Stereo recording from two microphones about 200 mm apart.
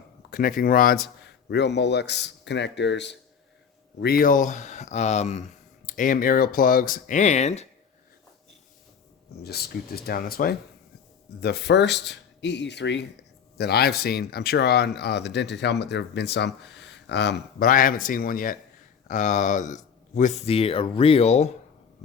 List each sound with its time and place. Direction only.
0.3 s speech: 45° left (ahead or behind)
1.5 s speech: 60° left (ahead or behind)
4.0 s speech: 45° left (ahead or behind)
9.4 s speech: 50° left (ahead or behind); by 21.5 s 35° left (ahead or behind)